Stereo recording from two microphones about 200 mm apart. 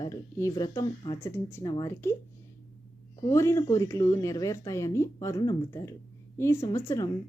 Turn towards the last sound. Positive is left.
turn(degrees=15)  # may be behind; listen again after turning